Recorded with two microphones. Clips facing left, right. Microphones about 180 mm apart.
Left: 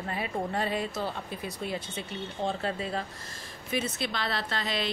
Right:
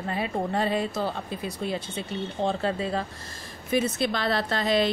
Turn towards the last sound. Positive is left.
turn(degrees=-45)  # may be behind; listen again after turning